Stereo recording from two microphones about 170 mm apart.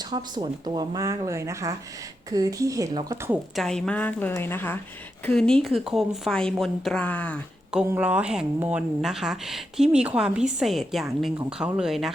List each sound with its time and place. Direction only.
0.0 s speech: 25° right (ahead or behind)
3.5 s a woman's voice: centre (ahead or behind)
7.9 s a woman's voice: 10° right (ahead or behind)